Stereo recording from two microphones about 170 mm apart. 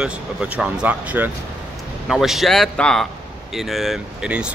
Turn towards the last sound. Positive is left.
turn(degrees=-5)  # may be behind; listen again after turning